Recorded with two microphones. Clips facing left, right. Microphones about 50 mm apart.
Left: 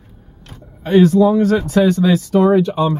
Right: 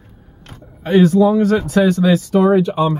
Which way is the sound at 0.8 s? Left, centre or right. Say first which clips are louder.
Left 1 dB; centre.